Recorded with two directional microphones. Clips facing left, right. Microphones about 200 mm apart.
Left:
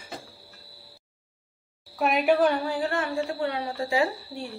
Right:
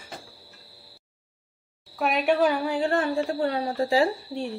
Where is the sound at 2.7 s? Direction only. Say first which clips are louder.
Right 3 dB; 30° right (ahead or behind).